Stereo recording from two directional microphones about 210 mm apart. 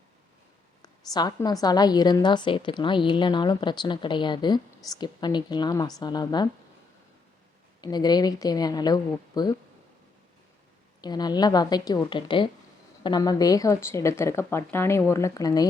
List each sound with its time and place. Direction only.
0.8 s a woman's voice: 20° left (ahead or behind)
7.8 s a woman's voice: 20° left (ahead or behind)
11.0 s a woman's voice: 20° left (ahead or behind)